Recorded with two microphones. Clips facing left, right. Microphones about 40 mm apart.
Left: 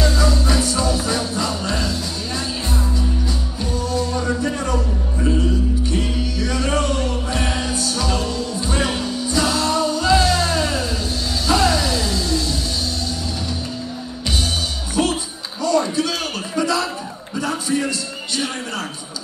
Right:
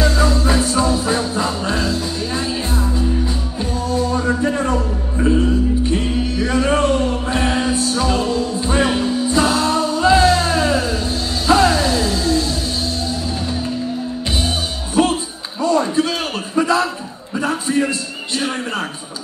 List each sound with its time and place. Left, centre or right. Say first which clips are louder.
0.2 s music: right 3 dB; centre
3.9 s music: right 5 dB; right
15.0 s music: right 4 dB; centre
15.6 s a sound: right 2 dB; right
16.5 s chuckle: right 4 dB; right
17.4 s a sound: right 3 dB; right